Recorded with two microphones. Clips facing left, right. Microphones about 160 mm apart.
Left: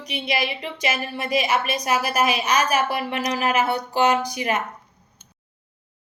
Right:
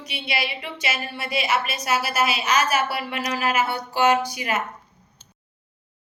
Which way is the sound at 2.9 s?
45° left (ahead or behind).